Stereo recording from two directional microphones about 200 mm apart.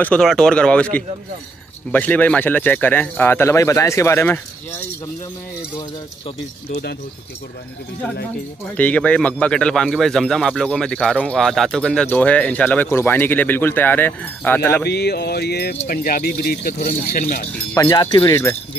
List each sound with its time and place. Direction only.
0.0 s speech: 5° left (ahead or behind)
5.8 s speech: 25° left (ahead or behind)
8.7 s speech: 5° left (ahead or behind)
14.9 s speech: 55° left (ahead or behind)
17.7 s speech: 15° left (ahead or behind)